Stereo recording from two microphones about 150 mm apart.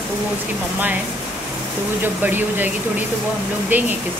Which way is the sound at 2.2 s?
10° right (ahead or behind).